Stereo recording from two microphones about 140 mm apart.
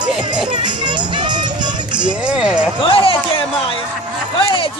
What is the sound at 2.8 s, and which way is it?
Speech, 40° left (ahead or behind).